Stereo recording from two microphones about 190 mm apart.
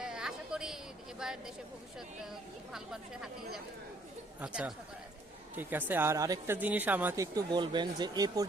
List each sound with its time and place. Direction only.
0.0 s a sound: 5° right (ahead or behind)
1.2 s speech: 5° right (ahead or behind)
2.7 s speech: 5° right (ahead or behind); by 8.4 s 20° right (ahead or behind)